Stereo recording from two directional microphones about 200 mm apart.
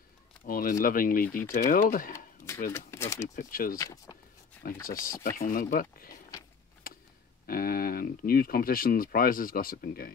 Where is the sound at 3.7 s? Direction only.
15° left (ahead or behind).